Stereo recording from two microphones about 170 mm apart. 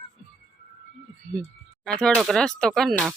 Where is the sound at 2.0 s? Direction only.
Centre (ahead or behind).